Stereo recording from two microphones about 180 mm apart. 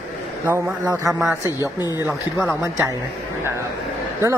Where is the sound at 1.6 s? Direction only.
20° left (ahead or behind).